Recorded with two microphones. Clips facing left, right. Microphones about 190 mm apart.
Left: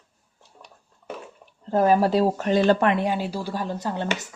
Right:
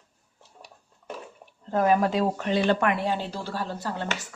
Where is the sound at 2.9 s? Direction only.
20° left (ahead or behind).